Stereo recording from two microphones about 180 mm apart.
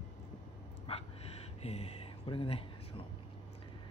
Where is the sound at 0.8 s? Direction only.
35° left (ahead or behind).